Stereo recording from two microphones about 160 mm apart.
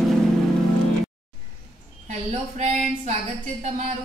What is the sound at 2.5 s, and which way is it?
Speech, 45° right (ahead or behind).